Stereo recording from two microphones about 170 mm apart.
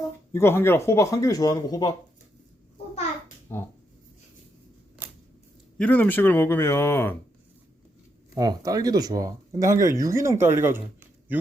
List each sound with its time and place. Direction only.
0.3 s speech: 15° left (ahead or behind)
3.5 s speech: 15° left (ahead or behind)
5.7 s speech: 10° left (ahead or behind)
8.4 s speech: 20° right (ahead or behind)